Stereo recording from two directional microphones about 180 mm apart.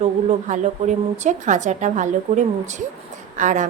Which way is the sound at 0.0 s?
40° right (ahead or behind).